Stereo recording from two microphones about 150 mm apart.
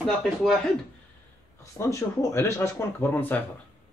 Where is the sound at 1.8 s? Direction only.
20° left (ahead or behind).